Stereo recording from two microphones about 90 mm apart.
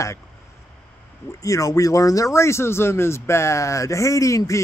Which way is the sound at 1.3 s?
40° left (ahead or behind).